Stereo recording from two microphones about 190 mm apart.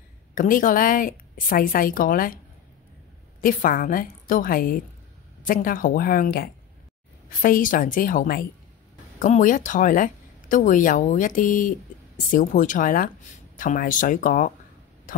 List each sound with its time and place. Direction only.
0.3 s speech: 45° left (ahead or behind)
3.3 s speech: 45° left (ahead or behind)